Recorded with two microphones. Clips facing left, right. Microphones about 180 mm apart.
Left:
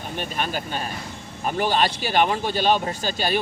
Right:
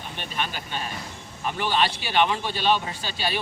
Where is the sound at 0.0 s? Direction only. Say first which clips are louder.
Left 4 dB; 40° left (ahead or behind).